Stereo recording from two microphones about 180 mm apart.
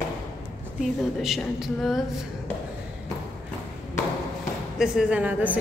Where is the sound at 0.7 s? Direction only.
Centre (ahead or behind).